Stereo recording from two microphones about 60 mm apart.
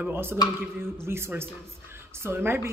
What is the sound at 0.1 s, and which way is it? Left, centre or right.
A woman's voice, right.